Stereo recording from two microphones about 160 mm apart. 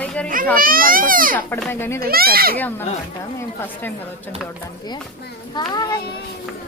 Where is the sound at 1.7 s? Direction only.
15° left (ahead or behind).